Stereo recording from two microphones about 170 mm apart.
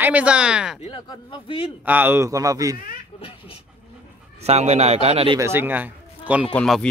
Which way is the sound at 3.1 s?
35° left (ahead or behind).